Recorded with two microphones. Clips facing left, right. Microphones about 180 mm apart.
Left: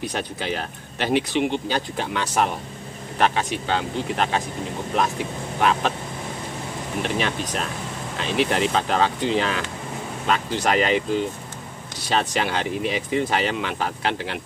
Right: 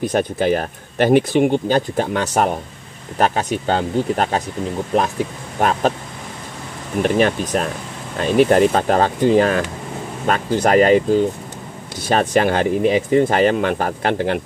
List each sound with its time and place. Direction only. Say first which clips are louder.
0.0 s speech: right 10 dB; 50° right (ahead or behind)
5.6 s speech: right 4 dB; 45° right (ahead or behind)
7.0 s speech: right 9 dB; 50° right (ahead or behind)